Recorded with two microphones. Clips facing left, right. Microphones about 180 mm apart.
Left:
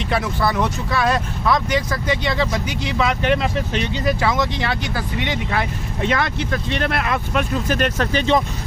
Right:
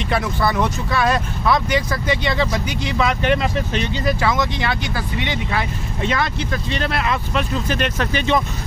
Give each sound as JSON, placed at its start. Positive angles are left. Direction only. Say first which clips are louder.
{"t": 0.1, "sound": "speech", "louder": "even", "side_deg": 0}
{"t": 4.0, "sound": "speech", "louder": "even", "side_deg": 25}